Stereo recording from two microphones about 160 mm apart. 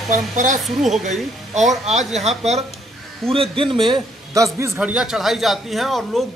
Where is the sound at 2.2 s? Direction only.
45° right (ahead or behind); by 4.7 s 20° right (ahead or behind).